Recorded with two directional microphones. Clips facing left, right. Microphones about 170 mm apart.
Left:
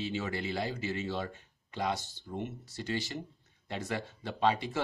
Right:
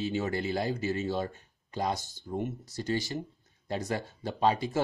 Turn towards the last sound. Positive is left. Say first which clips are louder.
# right 2 dB
turn(degrees=-40)  # may be behind; listen again after turning